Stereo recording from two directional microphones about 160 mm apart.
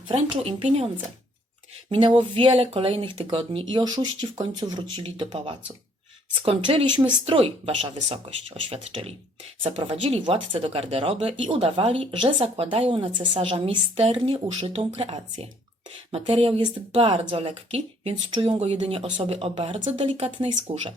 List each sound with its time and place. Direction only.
0.1 s speech: 40° right (ahead or behind)
1.9 s speech: 35° right (ahead or behind)